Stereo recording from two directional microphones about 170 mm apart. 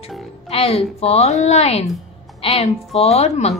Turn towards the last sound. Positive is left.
turn(degrees=40)  # may be behind; listen again after turning